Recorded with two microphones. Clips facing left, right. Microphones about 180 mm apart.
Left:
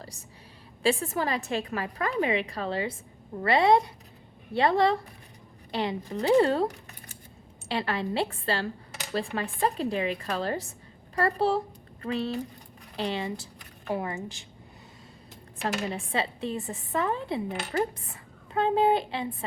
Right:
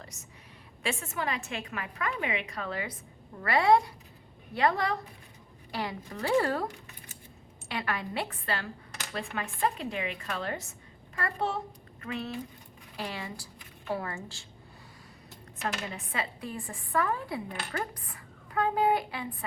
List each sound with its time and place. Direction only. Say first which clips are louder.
0.0 s a woman's voice: left 4 dB; 30° left (ahead or behind)
7.7 s speech: left 5 dB; 30° left (ahead or behind)
15.6 s speech: left 5 dB; 30° left (ahead or behind)